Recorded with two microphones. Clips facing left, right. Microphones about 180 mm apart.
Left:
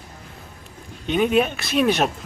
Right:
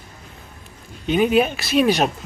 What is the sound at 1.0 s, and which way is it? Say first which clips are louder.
Speech: right 2 dB; 5° right (ahead or behind).